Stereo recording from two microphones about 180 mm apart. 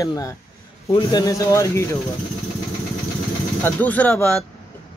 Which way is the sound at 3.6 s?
10° left (ahead or behind).